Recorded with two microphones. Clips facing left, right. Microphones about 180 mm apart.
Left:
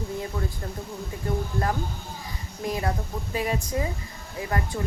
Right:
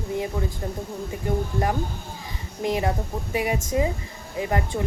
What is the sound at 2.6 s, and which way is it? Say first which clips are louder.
Speech: right 4 dB; 20° right (ahead or behind).